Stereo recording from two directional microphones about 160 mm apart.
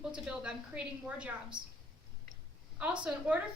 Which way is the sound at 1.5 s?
30° right (ahead or behind).